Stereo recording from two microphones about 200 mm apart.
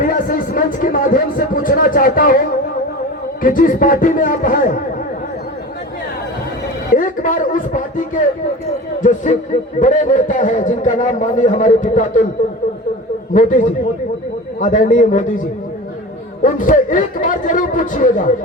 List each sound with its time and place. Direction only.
0.0 s speech: 45° left (ahead or behind)
3.4 s speech: 45° left (ahead or behind)
6.9 s a man's voice: 40° left (ahead or behind)
13.3 s a man's voice: 40° left (ahead or behind)
16.4 s a man's voice: 40° left (ahead or behind)